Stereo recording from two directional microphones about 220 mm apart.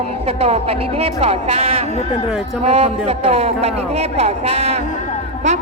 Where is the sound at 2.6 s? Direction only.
30° right (ahead or behind).